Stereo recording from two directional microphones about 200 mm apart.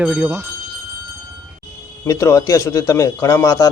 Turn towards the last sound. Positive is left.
turn(degrees=20)  # may be behind; listen again after turning